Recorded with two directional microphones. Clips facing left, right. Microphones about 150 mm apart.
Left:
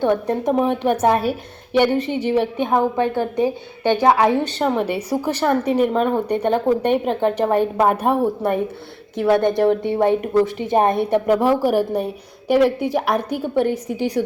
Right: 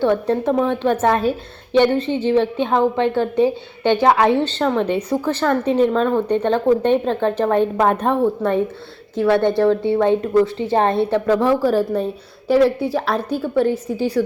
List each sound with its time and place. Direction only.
0.0 s a woman's voice: 15° left (ahead or behind)